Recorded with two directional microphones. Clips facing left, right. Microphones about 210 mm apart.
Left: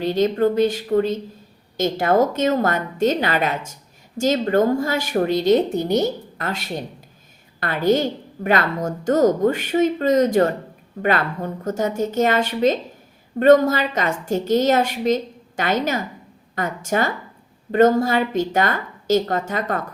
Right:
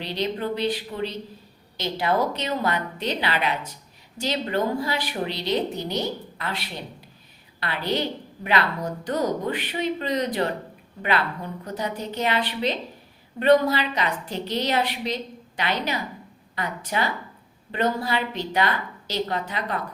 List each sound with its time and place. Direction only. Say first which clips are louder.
0.0 s a woman's voice: left 9 dB; 45° left (ahead or behind)